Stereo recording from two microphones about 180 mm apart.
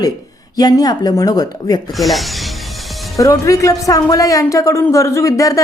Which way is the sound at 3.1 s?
20° left (ahead or behind).